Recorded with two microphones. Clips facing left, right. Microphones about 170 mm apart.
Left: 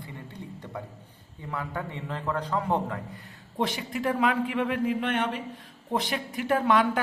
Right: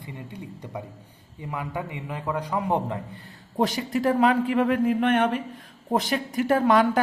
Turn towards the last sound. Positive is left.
turn(degrees=-40)  # may be behind; listen again after turning